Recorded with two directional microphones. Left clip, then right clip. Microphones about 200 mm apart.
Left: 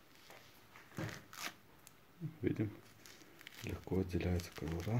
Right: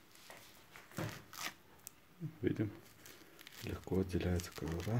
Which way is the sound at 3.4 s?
Centre (ahead or behind).